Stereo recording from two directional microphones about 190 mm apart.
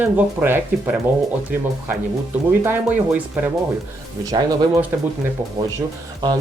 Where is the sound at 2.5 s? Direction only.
10° right (ahead or behind).